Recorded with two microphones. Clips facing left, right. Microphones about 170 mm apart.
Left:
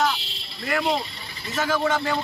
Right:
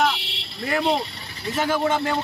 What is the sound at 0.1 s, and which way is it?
Buzzer, 70° right (ahead or behind).